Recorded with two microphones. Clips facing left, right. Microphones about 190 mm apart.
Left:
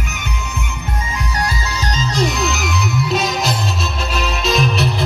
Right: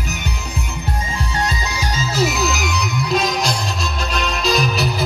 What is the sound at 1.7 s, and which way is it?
Music, 10° right (ahead or behind).